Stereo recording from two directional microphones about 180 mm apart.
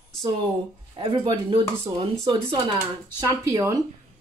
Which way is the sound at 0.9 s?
25° right (ahead or behind).